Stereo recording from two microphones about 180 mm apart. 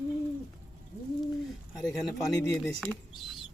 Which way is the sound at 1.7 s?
20° left (ahead or behind).